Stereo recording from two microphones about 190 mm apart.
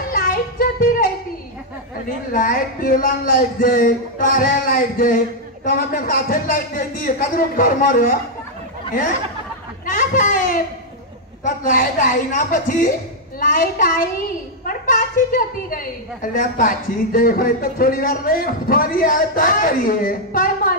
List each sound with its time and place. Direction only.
0.1 s music: 50° left (ahead or behind)
2.3 s a woman's voice: 50° left (ahead or behind)
9.8 s a sound: 45° left (ahead or behind)
11.4 s a woman's voice: 45° left (ahead or behind)